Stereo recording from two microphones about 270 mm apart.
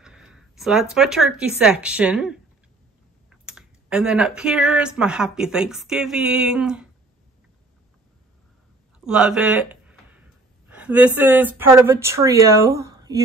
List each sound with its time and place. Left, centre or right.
0.0 s speech: centre
9.0 s a sound: centre
11.1 s speech: centre